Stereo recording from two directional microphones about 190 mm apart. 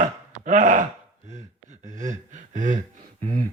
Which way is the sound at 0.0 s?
45° right (ahead or behind).